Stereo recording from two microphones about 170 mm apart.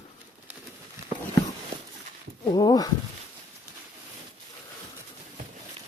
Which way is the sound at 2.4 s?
20° left (ahead or behind).